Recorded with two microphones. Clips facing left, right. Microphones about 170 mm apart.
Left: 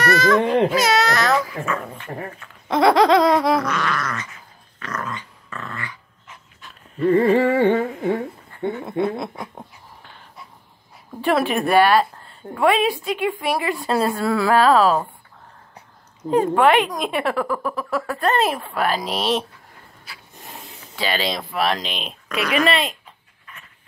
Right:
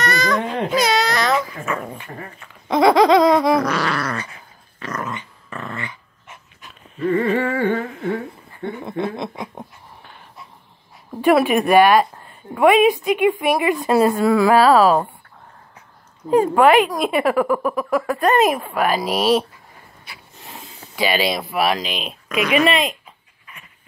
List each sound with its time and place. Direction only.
0.0 s baby cry: 5° left (ahead or behind)
1.3 s dog: 15° right (ahead or behind)
2.7 s a sound: centre (ahead or behind)
3.6 s dog: 35° right (ahead or behind)
7.1 s a sound: 35° left (ahead or behind)
11.1 s a woman's voice: 10° right (ahead or behind)
16.3 s a woman's voice: 10° right (ahead or behind)
20.9 s a woman's voice: 10° right (ahead or behind)
23.4 s a sound: 10° right (ahead or behind)